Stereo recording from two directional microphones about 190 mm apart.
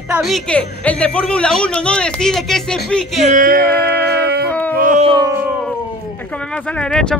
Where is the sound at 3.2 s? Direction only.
45° right (ahead or behind).